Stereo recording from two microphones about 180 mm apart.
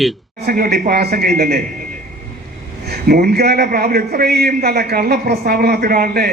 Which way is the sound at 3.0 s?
60° right (ahead or behind).